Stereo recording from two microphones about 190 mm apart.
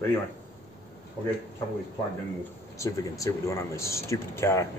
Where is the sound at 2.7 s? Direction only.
15° left (ahead or behind).